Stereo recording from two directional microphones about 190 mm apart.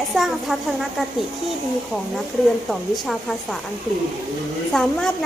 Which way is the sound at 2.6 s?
Centre (ahead or behind).